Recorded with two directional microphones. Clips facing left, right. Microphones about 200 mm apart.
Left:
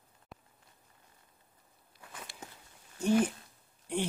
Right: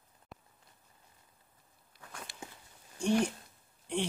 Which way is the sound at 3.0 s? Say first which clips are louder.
Left 2 dB; 5° left (ahead or behind).